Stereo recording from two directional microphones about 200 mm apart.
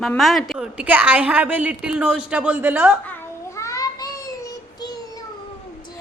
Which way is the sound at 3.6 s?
15° left (ahead or behind).